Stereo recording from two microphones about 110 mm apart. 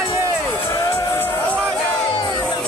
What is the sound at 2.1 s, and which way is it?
Crowd, 45° left (ahead or behind).